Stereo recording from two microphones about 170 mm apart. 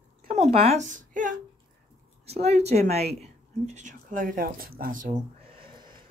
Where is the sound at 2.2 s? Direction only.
35° right (ahead or behind).